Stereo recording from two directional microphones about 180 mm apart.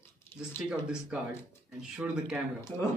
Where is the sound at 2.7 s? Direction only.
10° left (ahead or behind).